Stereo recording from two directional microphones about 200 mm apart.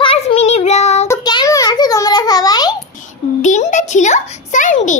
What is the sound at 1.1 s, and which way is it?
A child's voice, 20° left (ahead or behind).